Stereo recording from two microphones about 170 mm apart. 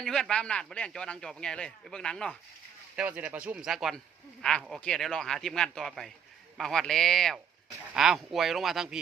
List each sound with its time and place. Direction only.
0.0 s speech: 5° left (ahead or behind)
2.9 s speech: 10° right (ahead or behind)